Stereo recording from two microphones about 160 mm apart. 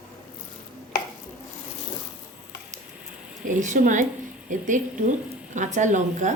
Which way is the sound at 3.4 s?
50° right (ahead or behind).